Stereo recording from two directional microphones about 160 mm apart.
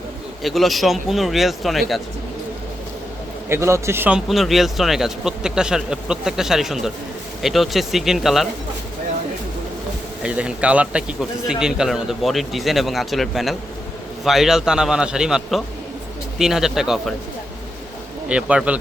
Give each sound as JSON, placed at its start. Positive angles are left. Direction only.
{"t": 0.4, "sound": "a man's voice", "side_deg": 0}
{"t": 3.5, "sound": "a man's voice", "side_deg": -15}
{"t": 4.3, "sound": "a man's voice", "side_deg": 0}
{"t": 10.2, "sound": "a man's voice", "side_deg": -10}
{"t": 18.3, "sound": "a man's voice", "side_deg": -5}